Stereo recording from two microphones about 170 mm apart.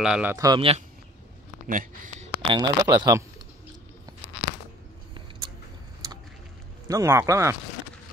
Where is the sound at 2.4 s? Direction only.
30° right (ahead or behind).